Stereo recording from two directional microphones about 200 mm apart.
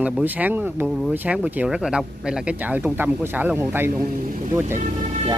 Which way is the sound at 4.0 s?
45° right (ahead or behind).